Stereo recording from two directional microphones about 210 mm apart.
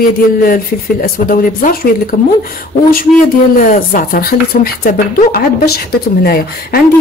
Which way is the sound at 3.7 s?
40° left (ahead or behind).